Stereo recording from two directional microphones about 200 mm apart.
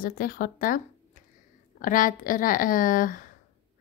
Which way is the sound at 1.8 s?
40° left (ahead or behind).